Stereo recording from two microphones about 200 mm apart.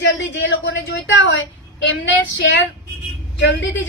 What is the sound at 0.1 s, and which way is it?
A woman's voice, 65° left (ahead or behind).